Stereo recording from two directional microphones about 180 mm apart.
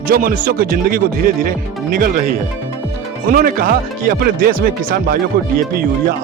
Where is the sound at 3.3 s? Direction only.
55° right (ahead or behind).